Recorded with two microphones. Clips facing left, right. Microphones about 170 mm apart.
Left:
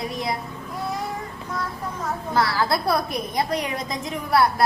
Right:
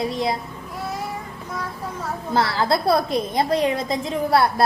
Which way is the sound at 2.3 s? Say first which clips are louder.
Right 2 dB; 25° right (ahead or behind).